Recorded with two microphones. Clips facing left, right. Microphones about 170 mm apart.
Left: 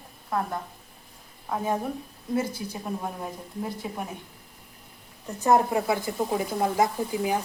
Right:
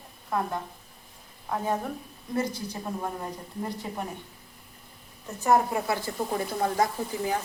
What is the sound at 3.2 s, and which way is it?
Speech, 5° left (ahead or behind).